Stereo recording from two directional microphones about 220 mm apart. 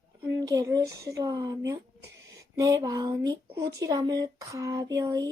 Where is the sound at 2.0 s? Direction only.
55° right (ahead or behind).